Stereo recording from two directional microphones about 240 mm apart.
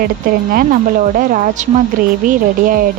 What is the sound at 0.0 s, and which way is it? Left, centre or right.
Speech, right.